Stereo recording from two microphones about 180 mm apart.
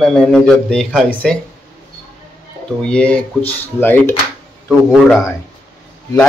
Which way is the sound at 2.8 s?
5° left (ahead or behind).